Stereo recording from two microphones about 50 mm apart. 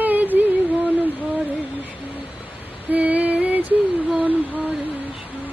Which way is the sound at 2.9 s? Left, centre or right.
Right.